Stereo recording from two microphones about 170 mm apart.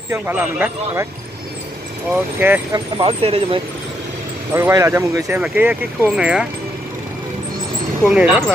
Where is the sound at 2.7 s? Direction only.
30° right (ahead or behind).